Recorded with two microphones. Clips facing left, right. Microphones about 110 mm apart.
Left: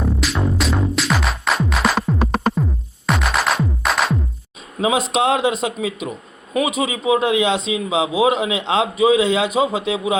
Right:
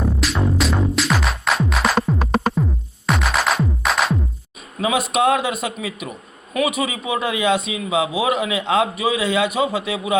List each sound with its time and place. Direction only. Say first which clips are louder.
0.0 s music: even; centre (ahead or behind)
4.8 s a man's voice: left 1 dB; 25° left (ahead or behind)